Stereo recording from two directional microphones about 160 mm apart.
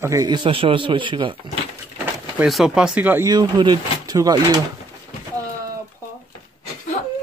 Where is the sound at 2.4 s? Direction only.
5° right (ahead or behind).